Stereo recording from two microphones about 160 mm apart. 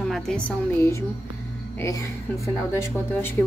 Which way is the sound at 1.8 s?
20° left (ahead or behind).